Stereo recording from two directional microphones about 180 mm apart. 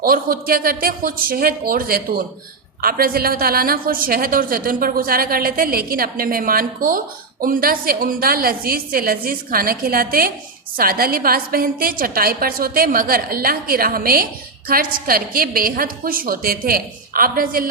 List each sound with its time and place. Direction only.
0.0 s a woman's voice: 55° right (ahead or behind)